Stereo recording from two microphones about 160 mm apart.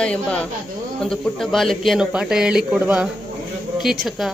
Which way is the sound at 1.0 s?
Centre (ahead or behind).